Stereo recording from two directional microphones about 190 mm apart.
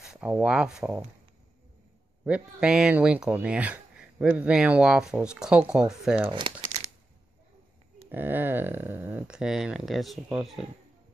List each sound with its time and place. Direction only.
0.0 s speech: 5° right (ahead or behind)
2.2 s speech: 5° right (ahead or behind)
6.3 s crumpling: 30° right (ahead or behind)
8.1 s speech: 10° right (ahead or behind)